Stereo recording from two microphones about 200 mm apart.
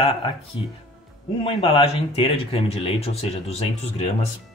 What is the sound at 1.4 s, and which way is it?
Speech, 25° left (ahead or behind).